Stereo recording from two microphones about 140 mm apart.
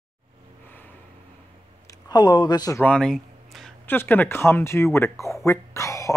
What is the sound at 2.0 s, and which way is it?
Speech, 30° left (ahead or behind).